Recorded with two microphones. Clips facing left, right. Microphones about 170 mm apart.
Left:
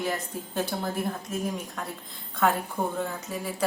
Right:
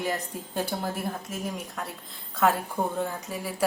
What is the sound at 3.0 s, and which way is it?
Speech, 10° right (ahead or behind).